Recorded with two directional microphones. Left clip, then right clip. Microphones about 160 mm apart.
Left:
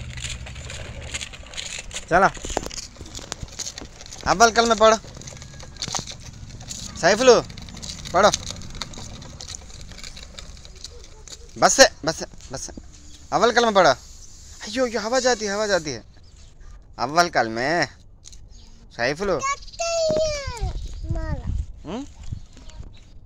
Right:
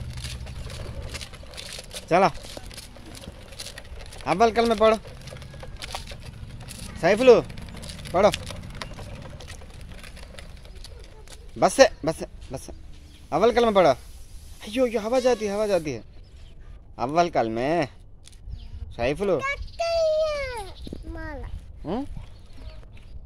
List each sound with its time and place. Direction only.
0.1 s vehicle: 10° left (ahead or behind)
7.0 s speech: 5° right (ahead or behind)
7.4 s a sound: 5° left (ahead or behind)
10.0 s a sound: 5° left (ahead or behind)
11.6 s a man's voice: 5° right (ahead or behind)
16.9 s speech: 10° right (ahead or behind)
18.9 s speech: 10° right (ahead or behind)
19.8 s babbling: 25° right (ahead or behind)
21.2 s a sound: 10° right (ahead or behind)